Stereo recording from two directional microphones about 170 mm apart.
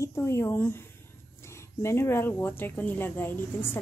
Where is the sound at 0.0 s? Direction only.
15° left (ahead or behind).